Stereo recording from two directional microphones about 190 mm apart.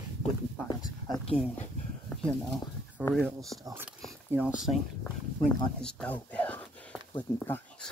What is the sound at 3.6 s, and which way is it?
Speech, 10° right (ahead or behind).